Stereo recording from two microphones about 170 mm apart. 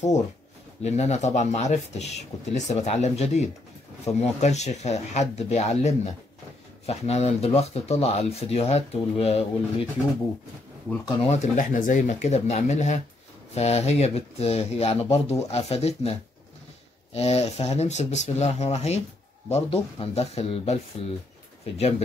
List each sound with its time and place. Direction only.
0.8 s speech: 40° left (ahead or behind)
11.1 s speech: 40° left (ahead or behind)